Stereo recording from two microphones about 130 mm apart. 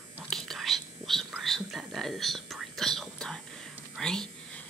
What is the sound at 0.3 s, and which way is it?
Whispering, 5° left (ahead or behind).